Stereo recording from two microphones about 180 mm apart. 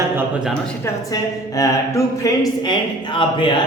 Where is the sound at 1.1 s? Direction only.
20° left (ahead or behind).